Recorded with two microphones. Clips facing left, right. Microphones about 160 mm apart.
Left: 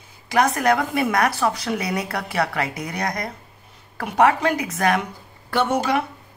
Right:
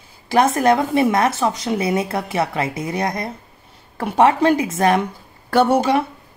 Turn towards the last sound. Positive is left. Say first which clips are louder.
# right 6 dB
turn(degrees=-40)  # may be behind; listen again after turning